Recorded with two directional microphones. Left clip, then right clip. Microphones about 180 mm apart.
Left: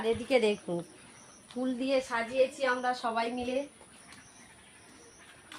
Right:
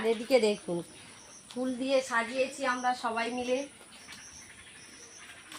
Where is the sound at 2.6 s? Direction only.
50° left (ahead or behind).